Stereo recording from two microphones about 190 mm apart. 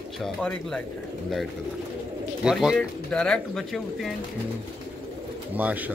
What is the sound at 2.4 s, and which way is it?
Speech, 5° right (ahead or behind).